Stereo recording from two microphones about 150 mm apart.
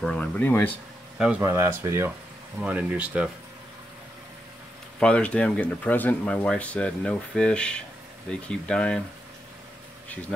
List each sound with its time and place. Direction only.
0.0 s speech: 5° left (ahead or behind)
1.1 s speech: 5° right (ahead or behind)
1.4 s speech: 20° right (ahead or behind)
5.0 s speech: 10° left (ahead or behind)